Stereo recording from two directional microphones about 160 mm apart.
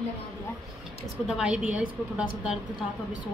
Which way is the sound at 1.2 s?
5° right (ahead or behind).